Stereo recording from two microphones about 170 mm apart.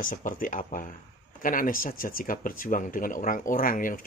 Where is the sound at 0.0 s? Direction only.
50° left (ahead or behind).